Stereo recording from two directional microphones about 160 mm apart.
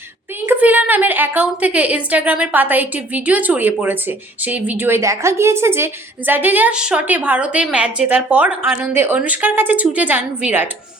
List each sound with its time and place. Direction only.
0.4 s a woman's voice: 10° right (ahead or behind)